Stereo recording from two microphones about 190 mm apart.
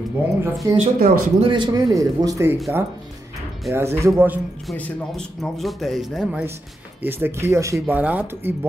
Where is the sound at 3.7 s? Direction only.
15° right (ahead or behind).